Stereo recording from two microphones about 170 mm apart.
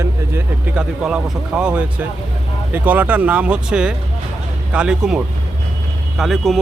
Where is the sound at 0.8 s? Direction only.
5° right (ahead or behind).